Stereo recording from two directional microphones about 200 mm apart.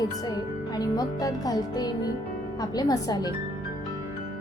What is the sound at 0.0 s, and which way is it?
Speech, 20° left (ahead or behind).